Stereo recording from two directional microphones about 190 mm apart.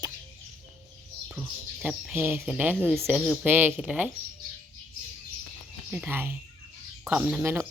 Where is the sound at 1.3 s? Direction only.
5° right (ahead or behind).